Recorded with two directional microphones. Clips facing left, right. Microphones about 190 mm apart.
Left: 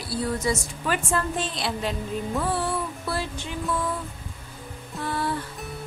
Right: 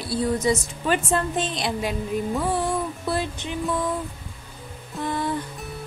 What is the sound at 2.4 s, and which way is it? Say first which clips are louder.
Music: even; 15° right (ahead or behind).